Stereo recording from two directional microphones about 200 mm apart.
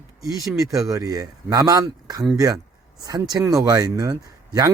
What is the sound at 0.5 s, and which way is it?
Speech, 15° right (ahead or behind).